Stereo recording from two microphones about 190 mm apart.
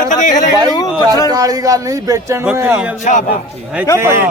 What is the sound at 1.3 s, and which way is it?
Speech, 20° right (ahead or behind).